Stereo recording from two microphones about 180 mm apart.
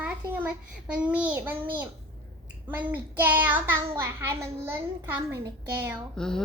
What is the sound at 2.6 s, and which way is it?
A child's voice, 10° right (ahead or behind).